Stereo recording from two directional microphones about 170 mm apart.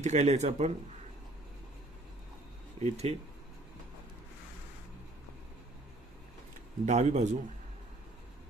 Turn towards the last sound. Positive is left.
turn(degrees=-45)  # may be behind; listen again after turning